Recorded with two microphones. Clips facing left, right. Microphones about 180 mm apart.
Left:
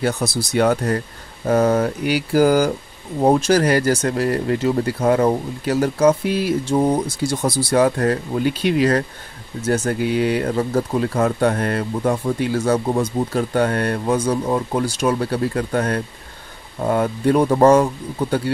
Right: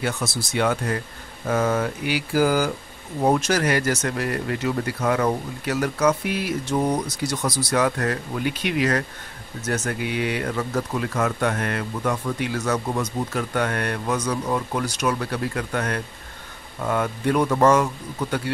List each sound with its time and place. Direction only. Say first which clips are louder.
0.0 s speech: left 6 dB; 35° left (ahead or behind)
1.5 s mantra: left 6 dB; 40° left (ahead or behind)
3.3 s speech: left 5 dB; 30° left (ahead or behind)